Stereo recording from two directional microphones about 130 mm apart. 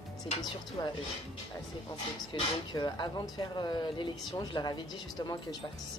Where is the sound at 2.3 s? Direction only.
35° left (ahead or behind).